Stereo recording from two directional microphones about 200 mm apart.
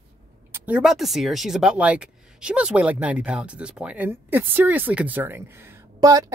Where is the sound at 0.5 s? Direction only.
5° right (ahead or behind).